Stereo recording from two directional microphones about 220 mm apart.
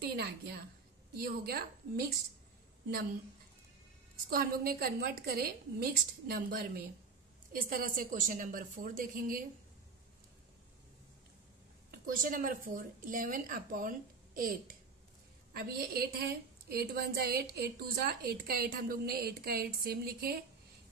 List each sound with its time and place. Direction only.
0.0 s a woman's voice: 45° right (ahead or behind)
4.3 s a woman's voice: 45° right (ahead or behind)
11.9 s a woman's voice: 40° right (ahead or behind)